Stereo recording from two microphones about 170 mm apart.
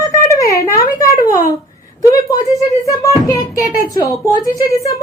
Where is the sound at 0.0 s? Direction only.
20° left (ahead or behind).